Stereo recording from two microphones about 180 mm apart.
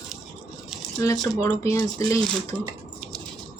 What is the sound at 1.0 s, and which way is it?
A woman's voice, 20° left (ahead or behind).